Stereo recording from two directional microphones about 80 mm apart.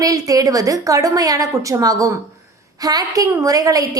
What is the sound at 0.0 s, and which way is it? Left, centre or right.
A woman's voice, right.